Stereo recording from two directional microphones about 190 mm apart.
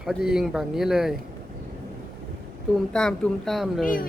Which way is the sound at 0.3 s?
Centre (ahead or behind).